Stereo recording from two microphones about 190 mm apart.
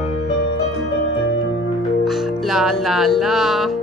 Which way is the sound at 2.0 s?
Centre (ahead or behind).